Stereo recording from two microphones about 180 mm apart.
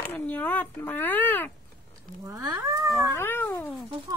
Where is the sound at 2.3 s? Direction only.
20° right (ahead or behind).